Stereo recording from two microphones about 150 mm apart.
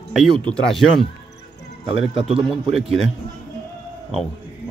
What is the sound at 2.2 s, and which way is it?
Speech, 40° right (ahead or behind).